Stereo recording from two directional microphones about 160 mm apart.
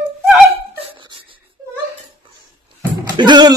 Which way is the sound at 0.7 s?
35° right (ahead or behind).